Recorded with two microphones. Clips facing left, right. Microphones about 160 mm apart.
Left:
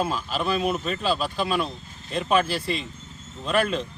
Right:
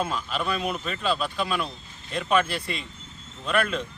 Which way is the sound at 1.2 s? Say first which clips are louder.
Left 2 dB; 35° left (ahead or behind).